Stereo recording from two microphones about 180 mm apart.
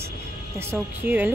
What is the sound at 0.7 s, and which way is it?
Speech, 10° right (ahead or behind).